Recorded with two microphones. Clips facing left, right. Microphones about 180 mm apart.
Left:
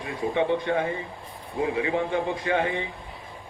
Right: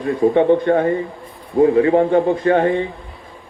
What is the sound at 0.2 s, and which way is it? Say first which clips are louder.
A man's voice: right 10 dB; 50° right (ahead or behind).